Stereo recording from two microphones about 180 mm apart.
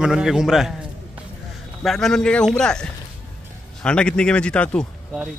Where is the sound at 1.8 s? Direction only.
Centre (ahead or behind).